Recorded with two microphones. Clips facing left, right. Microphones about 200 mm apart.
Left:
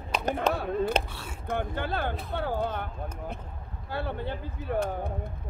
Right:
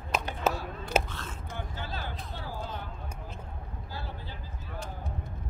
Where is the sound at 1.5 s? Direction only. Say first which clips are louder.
Left 11 dB; 60° left (ahead or behind).